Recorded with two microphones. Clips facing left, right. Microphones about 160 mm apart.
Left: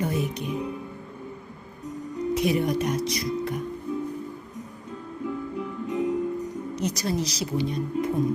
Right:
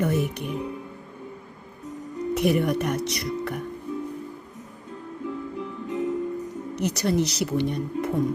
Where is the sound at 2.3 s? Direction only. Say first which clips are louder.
Right 2 dB; 65° right (ahead or behind).